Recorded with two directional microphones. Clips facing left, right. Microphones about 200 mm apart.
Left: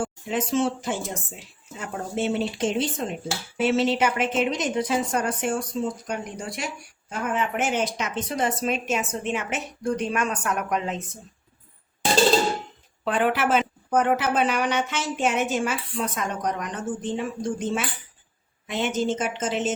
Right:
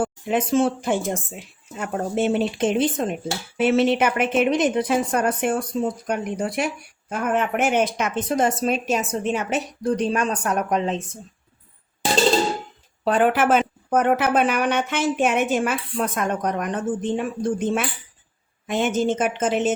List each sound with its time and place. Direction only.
0.0 s speech: 60° right (ahead or behind); by 11.0 s 30° right (ahead or behind)
13.1 s speech: 45° right (ahead or behind)